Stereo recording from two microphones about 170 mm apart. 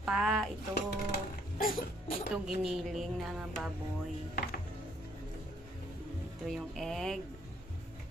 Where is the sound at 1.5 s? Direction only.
60° left (ahead or behind).